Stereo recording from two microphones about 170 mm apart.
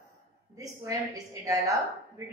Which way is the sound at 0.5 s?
20° right (ahead or behind).